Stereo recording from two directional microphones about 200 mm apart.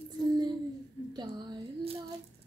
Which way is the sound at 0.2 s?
20° right (ahead or behind).